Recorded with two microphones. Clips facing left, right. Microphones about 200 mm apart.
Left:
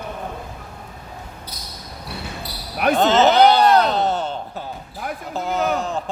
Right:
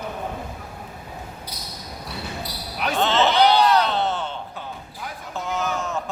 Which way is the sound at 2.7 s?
55° left (ahead or behind).